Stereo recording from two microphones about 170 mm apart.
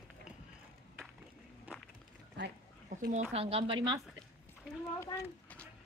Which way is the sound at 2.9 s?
50° right (ahead or behind).